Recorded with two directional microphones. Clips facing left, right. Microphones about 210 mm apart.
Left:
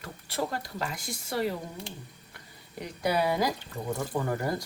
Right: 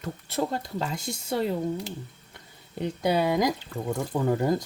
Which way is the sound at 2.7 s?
25° right (ahead or behind).